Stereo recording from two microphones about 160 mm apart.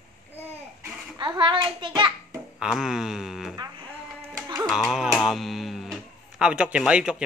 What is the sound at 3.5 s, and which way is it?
Music, 25° right (ahead or behind).